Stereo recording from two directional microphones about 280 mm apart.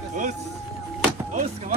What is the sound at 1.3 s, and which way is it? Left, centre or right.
Music, right.